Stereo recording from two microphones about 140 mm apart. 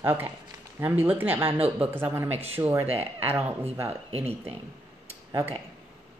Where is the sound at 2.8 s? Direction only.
45° right (ahead or behind).